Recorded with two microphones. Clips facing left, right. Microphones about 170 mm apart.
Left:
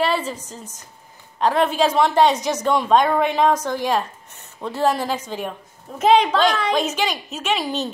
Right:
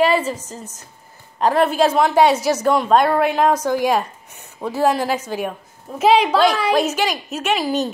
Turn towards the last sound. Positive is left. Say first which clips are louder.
# right 3 dB
turn(degrees=-5)  # may be behind; listen again after turning